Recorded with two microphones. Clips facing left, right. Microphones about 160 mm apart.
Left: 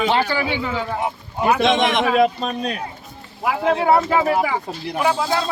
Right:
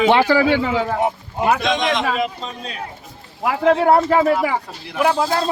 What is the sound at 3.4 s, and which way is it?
Speech, 55° right (ahead or behind).